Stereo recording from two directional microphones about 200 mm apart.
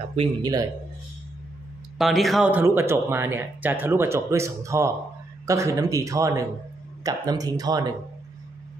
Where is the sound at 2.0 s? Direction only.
Centre (ahead or behind).